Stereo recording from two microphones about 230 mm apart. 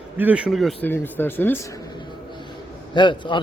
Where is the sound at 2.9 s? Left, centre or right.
Left.